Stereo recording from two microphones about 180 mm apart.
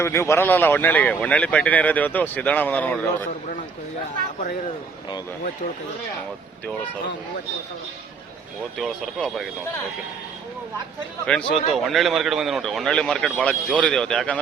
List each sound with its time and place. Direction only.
0.0 s speech: 15° left (ahead or behind)
8.8 s a man's voice: centre (ahead or behind)
11.3 s a man's voice: 5° left (ahead or behind)